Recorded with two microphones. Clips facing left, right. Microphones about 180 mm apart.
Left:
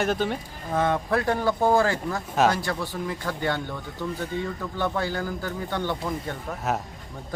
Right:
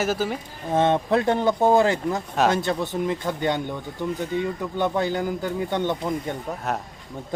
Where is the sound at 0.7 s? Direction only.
25° right (ahead or behind).